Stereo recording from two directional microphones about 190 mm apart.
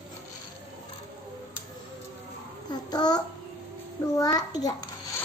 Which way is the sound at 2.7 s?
20° left (ahead or behind).